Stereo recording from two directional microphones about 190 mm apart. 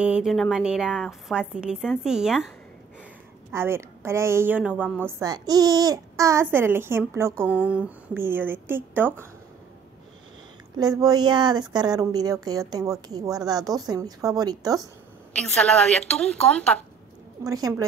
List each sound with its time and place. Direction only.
0.0 s a woman's voice: 5° right (ahead or behind)
3.5 s a woman's voice: 15° right (ahead or behind)
10.8 s a woman's voice: 20° right (ahead or behind)
15.3 s a woman's voice: 5° left (ahead or behind)
17.4 s a woman's voice: 20° right (ahead or behind)